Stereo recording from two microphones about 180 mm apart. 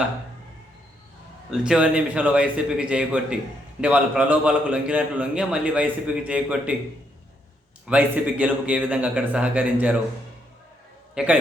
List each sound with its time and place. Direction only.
1.5 s a man's voice: 5° right (ahead or behind)
7.9 s a man's voice: 10° right (ahead or behind)
11.1 s a man's voice: 5° right (ahead or behind)